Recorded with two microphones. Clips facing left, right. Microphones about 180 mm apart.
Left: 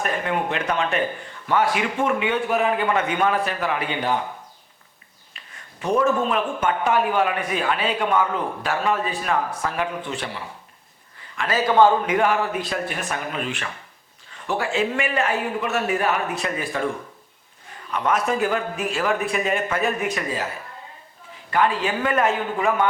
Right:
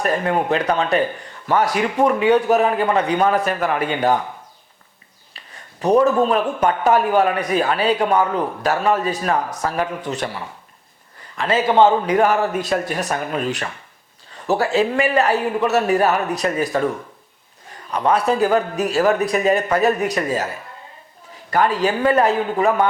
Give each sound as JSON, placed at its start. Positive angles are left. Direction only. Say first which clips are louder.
{"t": 0.0, "sound": "speech", "louder": "right 5 dB", "side_deg": -40}
{"t": 5.8, "sound": "speech", "louder": "right 5 dB", "side_deg": -40}
{"t": 11.3, "sound": "a man's voice", "louder": "right 2 dB", "side_deg": -25}
{"t": 12.0, "sound": "speech", "louder": "right 4 dB", "side_deg": -40}
{"t": 17.9, "sound": "speech", "louder": "right 4 dB", "side_deg": -35}
{"t": 21.5, "sound": "speech", "louder": "right 3 dB", "side_deg": -40}